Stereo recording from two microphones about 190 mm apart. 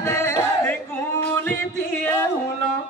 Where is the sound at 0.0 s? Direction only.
15° left (ahead or behind).